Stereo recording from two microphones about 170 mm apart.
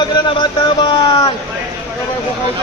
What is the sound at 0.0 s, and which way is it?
Speech, 30° left (ahead or behind).